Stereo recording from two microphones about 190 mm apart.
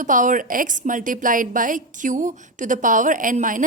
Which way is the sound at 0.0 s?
45° right (ahead or behind).